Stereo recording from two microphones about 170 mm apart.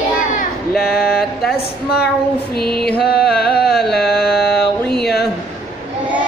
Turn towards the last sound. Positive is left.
turn(degrees=70)  # may be behind; listen again after turning